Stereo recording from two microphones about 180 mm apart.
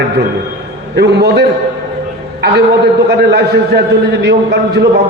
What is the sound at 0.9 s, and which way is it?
A man's voice, 65° right (ahead or behind).